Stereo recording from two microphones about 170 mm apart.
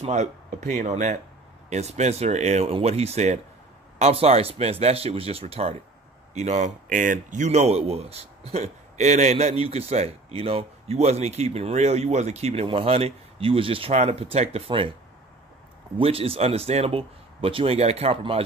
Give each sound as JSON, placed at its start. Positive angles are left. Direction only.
{"t": 0.0, "sound": "speech", "side_deg": -40}
{"t": 16.0, "sound": "speech", "side_deg": -35}